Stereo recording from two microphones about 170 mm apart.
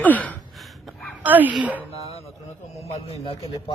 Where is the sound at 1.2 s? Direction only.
10° right (ahead or behind).